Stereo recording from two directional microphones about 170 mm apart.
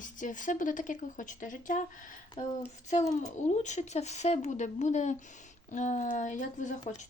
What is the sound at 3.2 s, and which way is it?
Speech, 45° left (ahead or behind).